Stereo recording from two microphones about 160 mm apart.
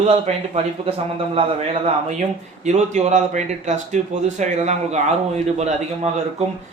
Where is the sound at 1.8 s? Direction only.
45° right (ahead or behind).